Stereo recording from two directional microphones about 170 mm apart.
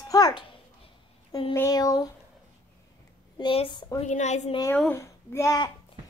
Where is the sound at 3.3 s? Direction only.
30° left (ahead or behind).